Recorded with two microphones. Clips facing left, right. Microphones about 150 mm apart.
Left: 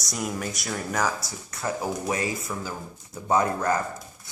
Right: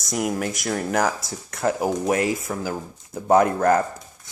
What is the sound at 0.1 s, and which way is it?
Speech, 60° right (ahead or behind).